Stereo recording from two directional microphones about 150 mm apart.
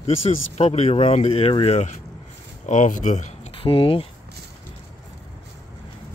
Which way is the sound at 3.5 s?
35° left (ahead or behind).